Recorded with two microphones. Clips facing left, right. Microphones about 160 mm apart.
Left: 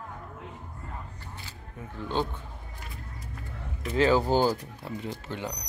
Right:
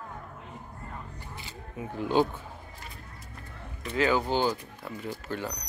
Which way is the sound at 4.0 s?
30° left (ahead or behind).